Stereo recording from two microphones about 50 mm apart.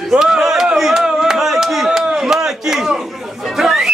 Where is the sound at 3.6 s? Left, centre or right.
Centre.